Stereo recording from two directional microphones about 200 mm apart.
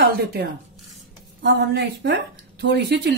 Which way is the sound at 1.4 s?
60° right (ahead or behind).